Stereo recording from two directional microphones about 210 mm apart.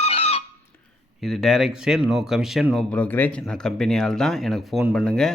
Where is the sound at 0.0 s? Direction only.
30° left (ahead or behind).